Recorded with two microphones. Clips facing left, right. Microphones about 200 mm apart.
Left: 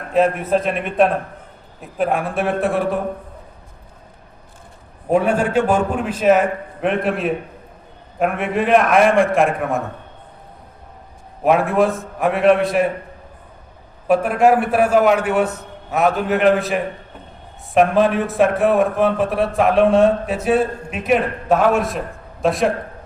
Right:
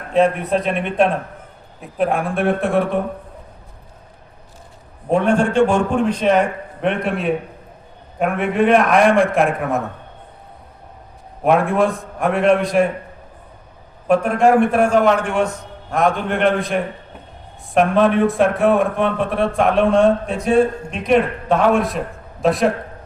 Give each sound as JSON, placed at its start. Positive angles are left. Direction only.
{"t": 0.1, "sound": "a man's voice", "side_deg": 0}
{"t": 5.0, "sound": "a man's voice", "side_deg": 5}
{"t": 11.4, "sound": "a man's voice", "side_deg": 0}
{"t": 14.1, "sound": "a man's voice", "side_deg": 5}